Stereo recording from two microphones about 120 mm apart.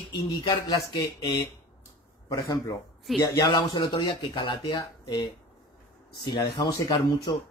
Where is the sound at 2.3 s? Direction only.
30° left (ahead or behind).